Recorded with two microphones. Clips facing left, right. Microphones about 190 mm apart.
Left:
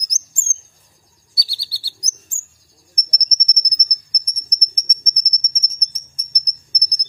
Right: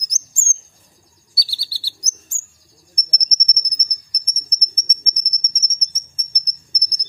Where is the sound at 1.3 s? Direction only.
15° left (ahead or behind).